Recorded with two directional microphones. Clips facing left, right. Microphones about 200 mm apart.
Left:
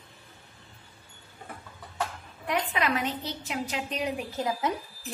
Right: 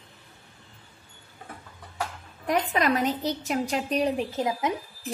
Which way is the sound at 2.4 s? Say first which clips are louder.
Right 4 dB; 40° right (ahead or behind).